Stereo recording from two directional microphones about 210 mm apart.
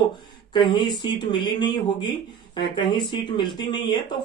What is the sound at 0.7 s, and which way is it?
Speech, 20° left (ahead or behind).